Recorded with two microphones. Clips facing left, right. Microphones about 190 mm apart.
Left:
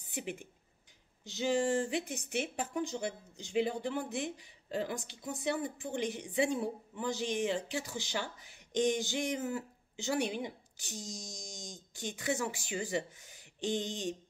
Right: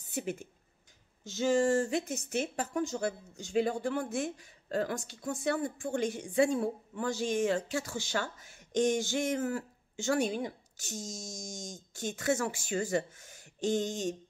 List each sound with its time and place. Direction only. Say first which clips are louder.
0.1 s a woman's voice: right 4 dB; 15° left (ahead or behind)
1.9 s a woman's voice: right 3 dB; 40° right (ahead or behind)
3.8 s a woman's voice: right 3 dB; 20° left (ahead or behind)